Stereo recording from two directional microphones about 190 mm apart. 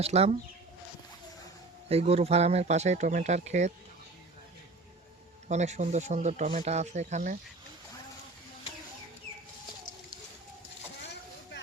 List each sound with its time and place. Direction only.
0.0 s speech: 35° right (ahead or behind)
1.9 s speech: 30° right (ahead or behind)
5.5 s speech: 35° right (ahead or behind)
11.0 s vehicle: 65° left (ahead or behind)